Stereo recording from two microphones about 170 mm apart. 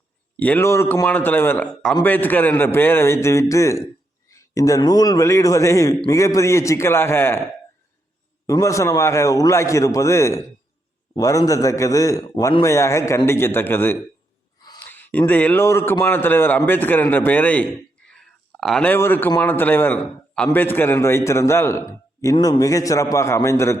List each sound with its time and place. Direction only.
0.3 s a man's voice: 10° left (ahead or behind)
8.4 s a man's voice: 20° left (ahead or behind)
14.8 s a sound: 10° left (ahead or behind)
15.3 s a man's voice: 10° left (ahead or behind)
18.1 s a sound: centre (ahead or behind)
19.4 s a man's voice: 10° left (ahead or behind)